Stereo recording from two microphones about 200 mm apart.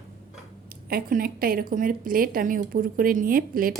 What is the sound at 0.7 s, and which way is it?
Speech, 45° right (ahead or behind).